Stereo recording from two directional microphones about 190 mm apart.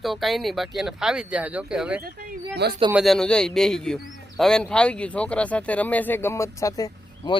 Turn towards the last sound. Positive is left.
turn(degrees=20)  # may be behind; listen again after turning